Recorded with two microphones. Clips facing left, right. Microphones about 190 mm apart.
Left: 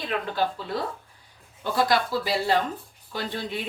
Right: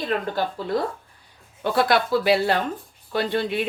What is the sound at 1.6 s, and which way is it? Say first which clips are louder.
Speech: right 3 dB; 65° right (ahead or behind).